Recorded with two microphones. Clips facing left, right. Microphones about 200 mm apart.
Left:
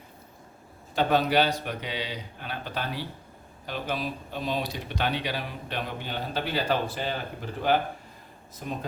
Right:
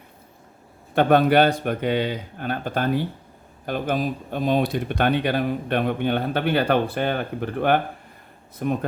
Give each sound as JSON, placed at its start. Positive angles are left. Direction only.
{"t": 0.9, "sound": "speech", "side_deg": -55}